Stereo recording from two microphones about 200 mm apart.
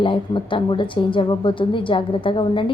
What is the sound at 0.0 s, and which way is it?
A woman's voice, 25° left (ahead or behind).